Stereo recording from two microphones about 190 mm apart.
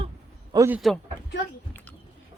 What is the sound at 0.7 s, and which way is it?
Speech, centre (ahead or behind).